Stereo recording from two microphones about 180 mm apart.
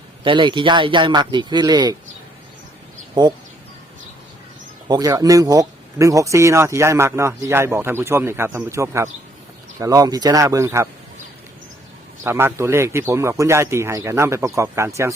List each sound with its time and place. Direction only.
0.3 s speech: 25° right (ahead or behind)
3.2 s speech: 25° right (ahead or behind)
4.9 s speech: 20° right (ahead or behind)
12.2 s speech: 15° right (ahead or behind)